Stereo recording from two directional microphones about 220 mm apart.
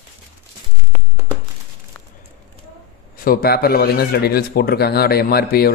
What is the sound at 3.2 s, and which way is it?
Speech, 40° left (ahead or behind).